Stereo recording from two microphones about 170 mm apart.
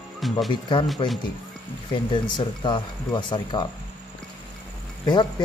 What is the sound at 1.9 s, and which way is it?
Speech, 30° left (ahead or behind).